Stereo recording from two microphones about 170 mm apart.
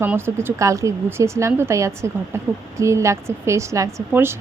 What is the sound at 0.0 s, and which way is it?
Speech, 15° right (ahead or behind).